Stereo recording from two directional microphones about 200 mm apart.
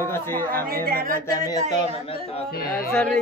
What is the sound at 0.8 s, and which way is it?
Music, 50° right (ahead or behind).